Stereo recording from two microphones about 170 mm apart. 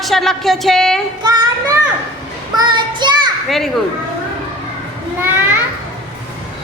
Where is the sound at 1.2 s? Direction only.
25° right (ahead or behind).